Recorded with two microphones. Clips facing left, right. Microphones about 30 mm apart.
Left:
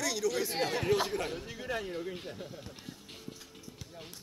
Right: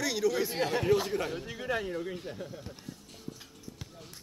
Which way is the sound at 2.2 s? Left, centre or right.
Centre.